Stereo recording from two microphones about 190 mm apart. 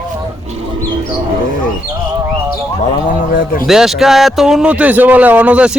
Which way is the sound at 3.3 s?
45° left (ahead or behind).